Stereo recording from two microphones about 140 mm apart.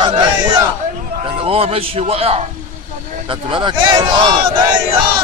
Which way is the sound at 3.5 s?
35° right (ahead or behind).